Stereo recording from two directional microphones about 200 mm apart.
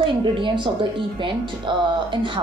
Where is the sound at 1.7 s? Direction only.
20° right (ahead or behind).